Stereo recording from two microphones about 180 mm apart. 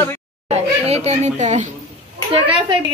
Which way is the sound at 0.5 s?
35° right (ahead or behind).